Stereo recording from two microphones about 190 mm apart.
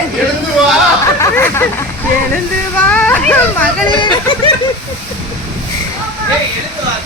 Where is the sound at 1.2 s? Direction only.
15° left (ahead or behind).